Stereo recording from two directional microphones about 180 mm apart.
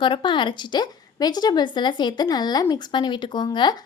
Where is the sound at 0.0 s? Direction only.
25° left (ahead or behind).